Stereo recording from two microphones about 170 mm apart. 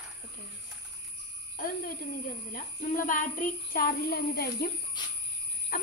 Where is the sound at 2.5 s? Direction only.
50° left (ahead or behind).